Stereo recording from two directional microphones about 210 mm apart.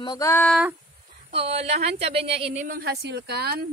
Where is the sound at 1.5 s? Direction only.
30° right (ahead or behind).